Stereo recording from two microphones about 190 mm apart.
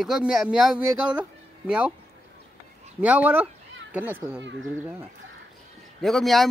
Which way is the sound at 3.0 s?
5° right (ahead or behind).